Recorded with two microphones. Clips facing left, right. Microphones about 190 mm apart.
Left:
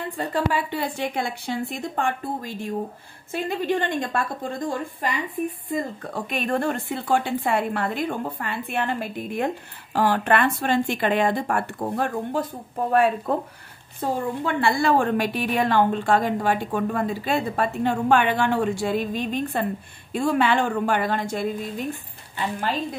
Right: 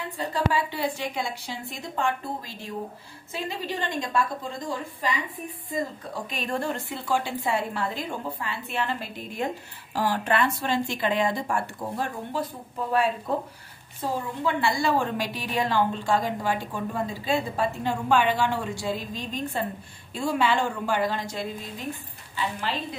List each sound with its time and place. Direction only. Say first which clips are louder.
0.3 s a woman's voice: left 1 dB; 55° left (ahead or behind)
22.7 s a woman's voice: left 7 dB; 45° left (ahead or behind)